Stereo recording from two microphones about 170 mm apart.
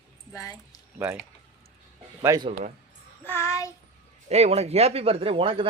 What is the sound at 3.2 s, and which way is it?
Child singing, 15° left (ahead or behind).